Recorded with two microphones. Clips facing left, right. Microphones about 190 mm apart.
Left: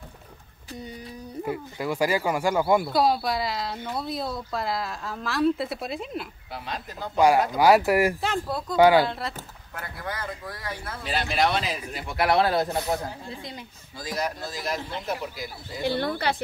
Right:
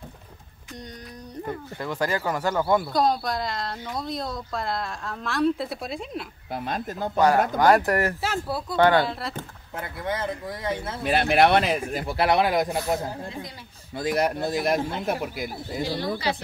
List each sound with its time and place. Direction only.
1.4 s speech: 10° left (ahead or behind)
6.5 s speech: 50° right (ahead or behind)
7.5 s speech: 5° left (ahead or behind)
8.2 s speech: 5° right (ahead or behind)
8.7 s speech: 5° left (ahead or behind)
9.8 s speech: 20° right (ahead or behind)
11.1 s a man's voice: 60° right (ahead or behind)
12.2 s speech: 20° right (ahead or behind)
13.9 s a man's voice: 60° right (ahead or behind)
15.9 s speech: 60° left (ahead or behind)